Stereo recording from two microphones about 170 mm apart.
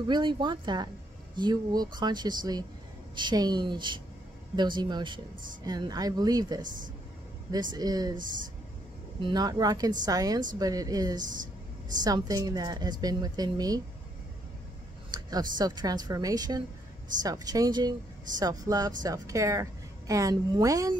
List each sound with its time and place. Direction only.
0.1 s a woman's voice: 25° right (ahead or behind)
6.6 s speech: 50° right (ahead or behind)
7.5 s a woman's voice: 25° right (ahead or behind)
9.2 s a woman's voice: 25° right (ahead or behind)
15.0 s a woman's voice: 25° right (ahead or behind)